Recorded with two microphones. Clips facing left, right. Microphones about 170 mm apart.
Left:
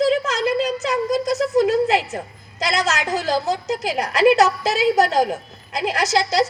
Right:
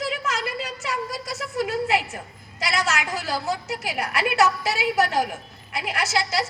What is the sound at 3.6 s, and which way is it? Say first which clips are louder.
A woman's voice: left 6 dB; 35° left (ahead or behind).